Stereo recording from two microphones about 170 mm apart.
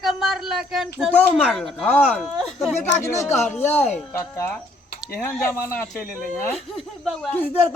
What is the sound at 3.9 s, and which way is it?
Speech, 15° left (ahead or behind).